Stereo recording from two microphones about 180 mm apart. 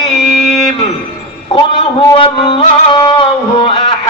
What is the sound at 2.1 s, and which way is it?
Music, 30° left (ahead or behind).